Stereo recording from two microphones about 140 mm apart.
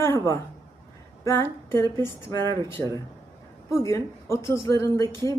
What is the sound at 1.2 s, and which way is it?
Speech, 20° left (ahead or behind).